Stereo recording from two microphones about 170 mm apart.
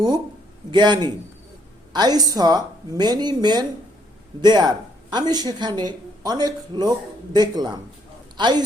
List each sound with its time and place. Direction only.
0.7 s speech: 25° right (ahead or behind)